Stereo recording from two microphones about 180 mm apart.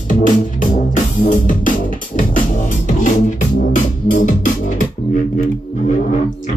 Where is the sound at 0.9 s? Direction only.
45° left (ahead or behind).